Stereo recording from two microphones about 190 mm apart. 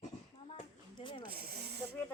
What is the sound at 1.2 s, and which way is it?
Snake, 50° right (ahead or behind).